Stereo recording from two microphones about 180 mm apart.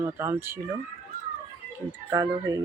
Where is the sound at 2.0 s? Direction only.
15° right (ahead or behind).